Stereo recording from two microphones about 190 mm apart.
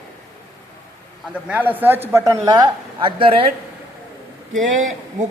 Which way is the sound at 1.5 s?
10° right (ahead or behind).